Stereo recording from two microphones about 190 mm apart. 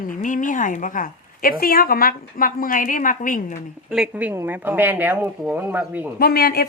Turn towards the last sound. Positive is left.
turn(degrees=55)  # may be behind; listen again after turning